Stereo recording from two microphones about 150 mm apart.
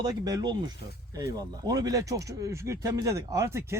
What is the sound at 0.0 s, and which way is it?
Speech, 25° right (ahead or behind).